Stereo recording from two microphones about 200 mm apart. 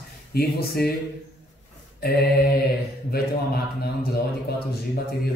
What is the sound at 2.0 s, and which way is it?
A man's voice, 50° left (ahead or behind).